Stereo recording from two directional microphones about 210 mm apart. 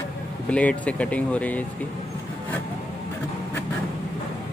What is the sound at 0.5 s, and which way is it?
Speech, 5° left (ahead or behind).